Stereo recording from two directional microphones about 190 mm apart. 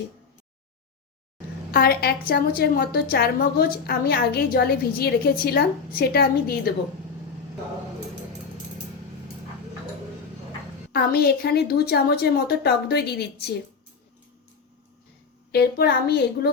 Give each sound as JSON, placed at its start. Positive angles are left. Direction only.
{"t": 1.7, "sound": "a woman's voice", "side_deg": 55}
{"t": 10.9, "sound": "speech", "side_deg": 55}
{"t": 15.5, "sound": "speech", "side_deg": 60}